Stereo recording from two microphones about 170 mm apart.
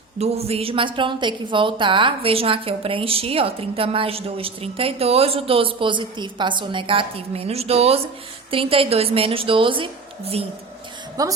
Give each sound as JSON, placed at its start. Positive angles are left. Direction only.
{"t": 0.2, "sound": "a woman's voice", "side_deg": -35}
{"t": 11.2, "sound": "a woman's voice", "side_deg": -20}